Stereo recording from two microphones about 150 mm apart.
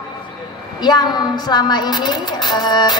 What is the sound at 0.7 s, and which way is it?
A woman's voice, 30° left (ahead or behind).